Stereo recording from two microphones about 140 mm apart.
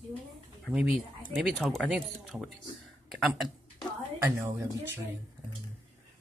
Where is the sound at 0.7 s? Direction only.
5° right (ahead or behind).